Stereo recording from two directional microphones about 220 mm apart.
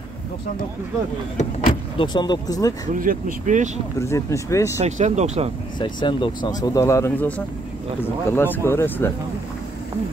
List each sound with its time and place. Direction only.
1.4 s speech: 25° left (ahead or behind)
2.9 s speech: 40° right (ahead or behind)
4.0 s speech: 15° left (ahead or behind)
4.7 s speech: 30° right (ahead or behind)
5.8 s speech: 20° left (ahead or behind)